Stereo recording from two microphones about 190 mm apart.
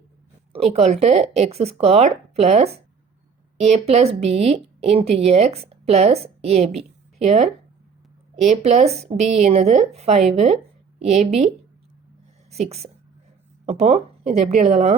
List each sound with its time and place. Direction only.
0.5 s speech: 30° right (ahead or behind)
12.5 s a woman's voice: 35° right (ahead or behind)